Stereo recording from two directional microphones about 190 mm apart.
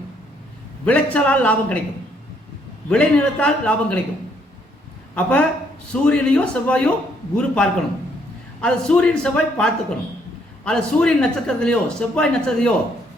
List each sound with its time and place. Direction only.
0.9 s a man's voice: 10° left (ahead or behind)
2.9 s a man's voice: 5° left (ahead or behind)
5.1 s a man's voice: 5° left (ahead or behind)